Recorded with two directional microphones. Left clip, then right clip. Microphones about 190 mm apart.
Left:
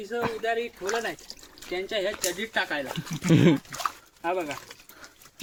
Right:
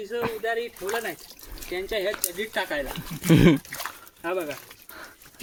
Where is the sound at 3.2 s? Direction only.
20° right (ahead or behind).